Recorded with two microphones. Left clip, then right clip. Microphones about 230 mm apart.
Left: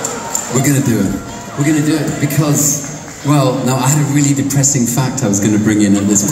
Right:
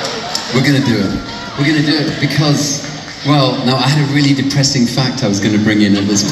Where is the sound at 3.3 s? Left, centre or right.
Left.